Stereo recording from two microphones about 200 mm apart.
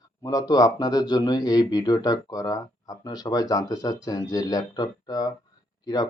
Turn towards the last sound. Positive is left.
turn(degrees=20)  # may be behind; listen again after turning